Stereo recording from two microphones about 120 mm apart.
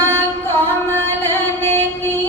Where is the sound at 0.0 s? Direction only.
20° left (ahead or behind).